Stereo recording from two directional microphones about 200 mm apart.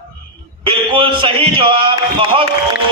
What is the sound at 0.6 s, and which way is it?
A man's voice, 25° right (ahead or behind).